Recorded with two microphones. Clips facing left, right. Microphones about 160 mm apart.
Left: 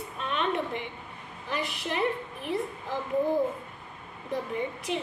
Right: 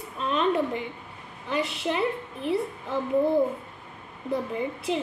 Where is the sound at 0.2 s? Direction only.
35° right (ahead or behind).